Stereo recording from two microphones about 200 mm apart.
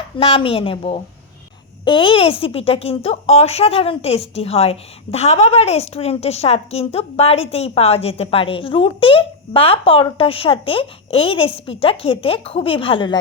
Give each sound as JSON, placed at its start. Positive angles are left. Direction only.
{"t": 0.2, "sound": "a woman's voice", "side_deg": 30}